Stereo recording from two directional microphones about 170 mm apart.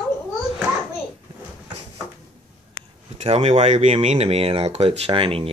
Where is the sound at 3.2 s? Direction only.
35° right (ahead or behind).